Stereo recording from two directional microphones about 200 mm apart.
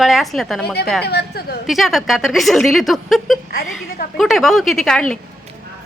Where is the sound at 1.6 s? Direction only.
Centre (ahead or behind).